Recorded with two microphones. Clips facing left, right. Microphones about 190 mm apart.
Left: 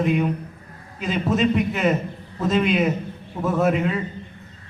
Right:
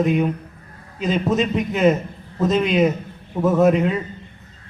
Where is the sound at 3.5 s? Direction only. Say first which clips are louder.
Right 4 dB; centre (ahead or behind).